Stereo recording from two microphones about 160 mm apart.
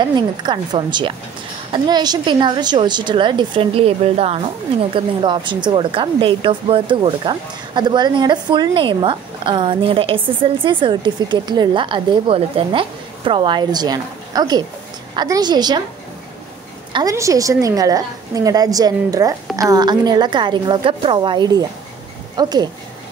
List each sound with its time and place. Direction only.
0.0 s a woman's voice: 30° right (ahead or behind)
16.9 s a woman's voice: 20° right (ahead or behind)